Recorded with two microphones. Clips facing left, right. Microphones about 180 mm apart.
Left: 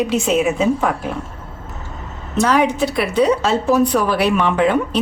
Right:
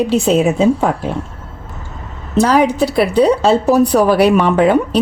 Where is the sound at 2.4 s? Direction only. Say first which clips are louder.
Right 4 dB; 35° right (ahead or behind).